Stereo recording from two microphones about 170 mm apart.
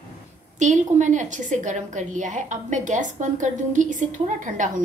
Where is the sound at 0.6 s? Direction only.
45° right (ahead or behind).